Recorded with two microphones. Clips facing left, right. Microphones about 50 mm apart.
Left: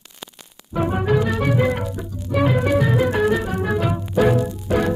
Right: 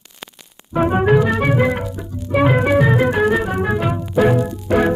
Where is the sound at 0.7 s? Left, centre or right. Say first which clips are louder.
Right 5 dB; right.